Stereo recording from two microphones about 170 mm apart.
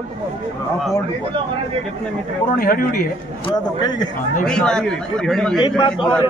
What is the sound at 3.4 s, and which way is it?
Speech, 25° left (ahead or behind).